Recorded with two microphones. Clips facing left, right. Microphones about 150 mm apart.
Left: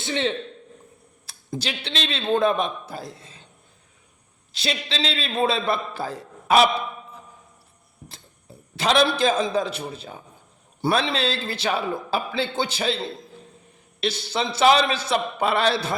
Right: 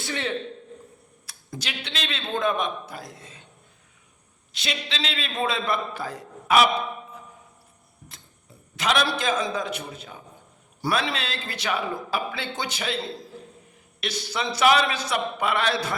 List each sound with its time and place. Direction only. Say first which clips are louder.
0.0 s a man's voice: left 4 dB; 25° left (ahead or behind)
4.5 s a man's voice: left 4 dB; 35° left (ahead or behind)
8.7 s a man's voice: left 4 dB; 30° left (ahead or behind)
14.0 s a man's voice: left 4 dB; 30° left (ahead or behind)